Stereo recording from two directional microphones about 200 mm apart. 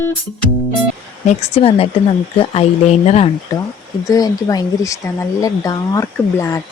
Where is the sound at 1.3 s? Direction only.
30° left (ahead or behind).